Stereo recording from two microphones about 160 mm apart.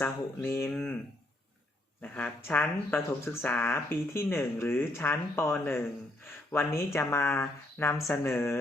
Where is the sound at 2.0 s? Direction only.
10° left (ahead or behind).